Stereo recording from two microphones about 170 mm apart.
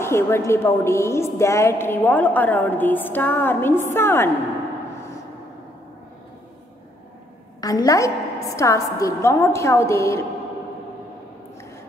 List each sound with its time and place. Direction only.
0.0 s a woman's voice: 15° left (ahead or behind)
7.6 s a woman's voice: 20° left (ahead or behind)